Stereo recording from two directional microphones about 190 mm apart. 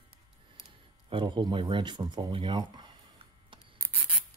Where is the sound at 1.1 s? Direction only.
25° right (ahead or behind).